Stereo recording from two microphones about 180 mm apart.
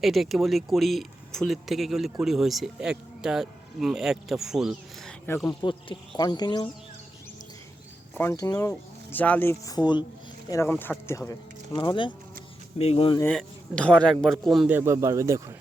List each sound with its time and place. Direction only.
0.0 s speech: centre (ahead or behind)
5.5 s speech: 25° left (ahead or behind)
8.1 s speech: 15° left (ahead or behind); by 13.1 s 35° left (ahead or behind)
13.2 s speech: 5° left (ahead or behind)
14.8 s speech: 15° right (ahead or behind)